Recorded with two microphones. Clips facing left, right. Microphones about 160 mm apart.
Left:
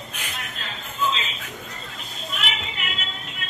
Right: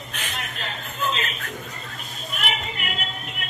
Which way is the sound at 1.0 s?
55° right (ahead or behind).